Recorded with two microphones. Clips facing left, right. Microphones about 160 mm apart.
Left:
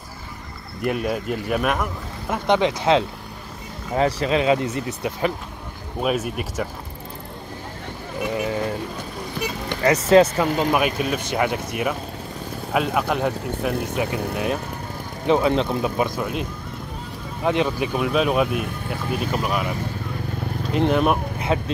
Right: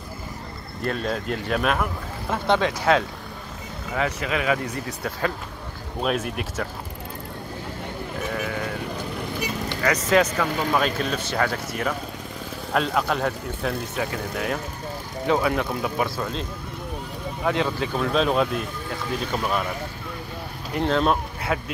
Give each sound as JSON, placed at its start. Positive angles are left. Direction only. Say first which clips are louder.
{"t": 0.8, "sound": "speech", "louder": "left 3 dB", "side_deg": 10}
{"t": 3.9, "sound": "speech", "louder": "left 6 dB", "side_deg": 35}
{"t": 5.9, "sound": "speech", "louder": "left 2 dB", "side_deg": 5}
{"t": 9.8, "sound": "speech", "louder": "left 6 dB", "side_deg": 30}
{"t": 17.5, "sound": "speech", "louder": "left 3 dB", "side_deg": 20}
{"t": 20.7, "sound": "speech", "louder": "left 2 dB", "side_deg": 15}